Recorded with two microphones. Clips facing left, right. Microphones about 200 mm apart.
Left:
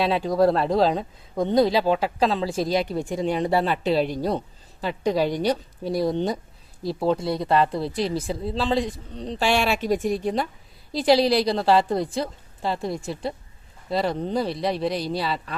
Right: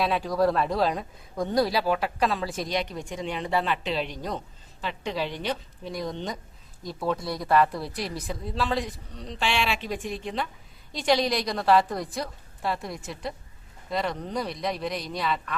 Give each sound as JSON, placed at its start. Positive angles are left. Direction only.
{"t": 0.3, "sound": "speech", "side_deg": 25}